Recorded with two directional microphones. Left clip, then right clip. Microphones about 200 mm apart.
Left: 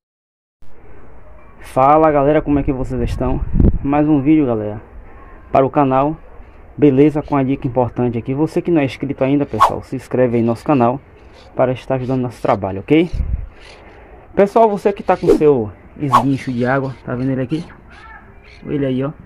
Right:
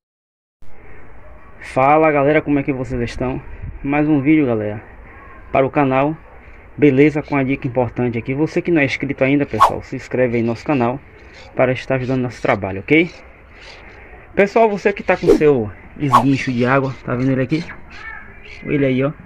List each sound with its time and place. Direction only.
1.6 s a sound: 5° left (ahead or behind)
2.0 s speech: 10° left (ahead or behind)
5.5 s speech: 15° left (ahead or behind); by 9.8 s centre (ahead or behind)
9.8 s speech: 20° left (ahead or behind)
11.5 s speech: 5° left (ahead or behind)
14.4 s speech: 15° left (ahead or behind); by 19.1 s 5° right (ahead or behind)